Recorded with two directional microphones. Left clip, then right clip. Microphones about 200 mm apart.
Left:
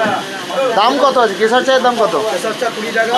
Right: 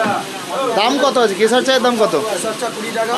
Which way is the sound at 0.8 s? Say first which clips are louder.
Left 3 dB; 25° right (ahead or behind).